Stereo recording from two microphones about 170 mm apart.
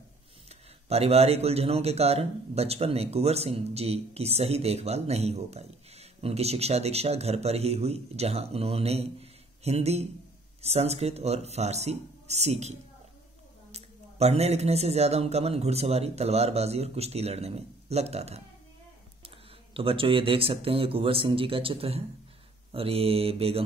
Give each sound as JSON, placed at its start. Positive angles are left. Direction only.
{"t": 0.5, "sound": "speech", "side_deg": -35}